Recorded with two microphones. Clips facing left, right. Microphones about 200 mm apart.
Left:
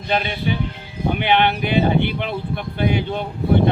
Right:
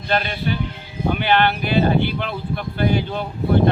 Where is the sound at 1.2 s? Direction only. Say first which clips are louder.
Left 1 dB; 20° left (ahead or behind).